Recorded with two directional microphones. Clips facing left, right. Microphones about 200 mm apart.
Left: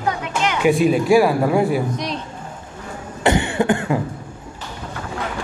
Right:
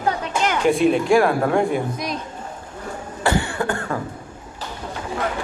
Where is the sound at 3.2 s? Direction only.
20° left (ahead or behind).